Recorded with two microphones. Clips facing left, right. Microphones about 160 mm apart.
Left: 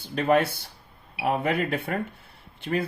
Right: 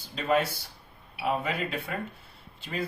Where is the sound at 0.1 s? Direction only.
60° left (ahead or behind).